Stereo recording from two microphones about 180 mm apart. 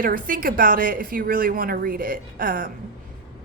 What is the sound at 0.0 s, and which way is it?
A woman's voice, 50° right (ahead or behind).